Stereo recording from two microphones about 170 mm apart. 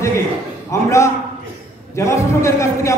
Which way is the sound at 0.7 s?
15° left (ahead or behind).